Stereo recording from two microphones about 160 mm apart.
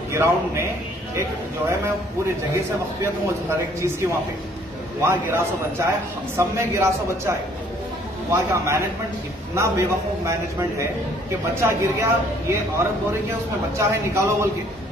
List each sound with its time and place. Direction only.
0.1 s a man's voice: 15° right (ahead or behind)
2.5 s a man's voice: 15° right (ahead or behind)
11.6 s a man's voice: 15° right (ahead or behind)